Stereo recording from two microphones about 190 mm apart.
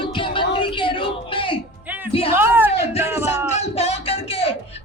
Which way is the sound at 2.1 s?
30° left (ahead or behind).